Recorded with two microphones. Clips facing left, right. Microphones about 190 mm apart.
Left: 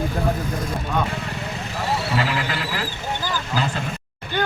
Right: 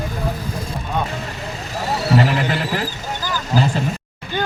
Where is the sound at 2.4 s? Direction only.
25° right (ahead or behind).